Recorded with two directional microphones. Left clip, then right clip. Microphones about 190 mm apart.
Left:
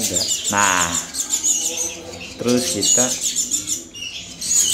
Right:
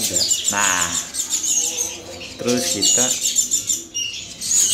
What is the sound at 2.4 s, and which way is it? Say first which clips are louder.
Speech: even; centre (ahead or behind).